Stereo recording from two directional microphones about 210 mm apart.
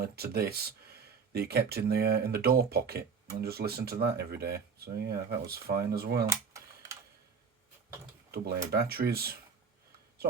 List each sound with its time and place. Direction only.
0.0 s speech: 50° right (ahead or behind)
6.2 s computer keyboard: 15° right (ahead or behind)
8.7 s speech: 50° right (ahead or behind)